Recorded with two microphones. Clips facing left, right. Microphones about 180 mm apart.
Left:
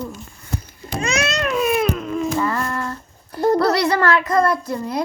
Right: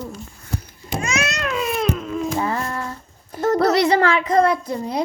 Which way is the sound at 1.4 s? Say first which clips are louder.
Left 7 dB; 15° left (ahead or behind).